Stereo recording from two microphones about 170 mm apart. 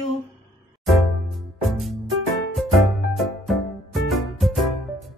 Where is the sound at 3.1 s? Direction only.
Centre (ahead or behind).